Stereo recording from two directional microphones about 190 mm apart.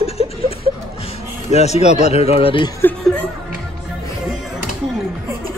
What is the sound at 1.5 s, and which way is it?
Speech, 35° left (ahead or behind).